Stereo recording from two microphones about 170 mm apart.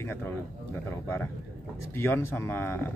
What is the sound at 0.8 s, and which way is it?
A man's voice, 15° left (ahead or behind).